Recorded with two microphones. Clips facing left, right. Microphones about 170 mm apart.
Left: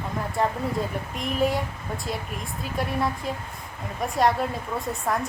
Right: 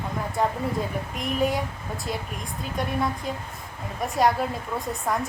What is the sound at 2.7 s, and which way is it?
Speech, centre (ahead or behind).